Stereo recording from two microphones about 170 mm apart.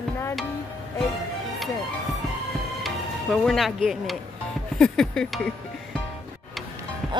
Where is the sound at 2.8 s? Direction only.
Centre (ahead or behind).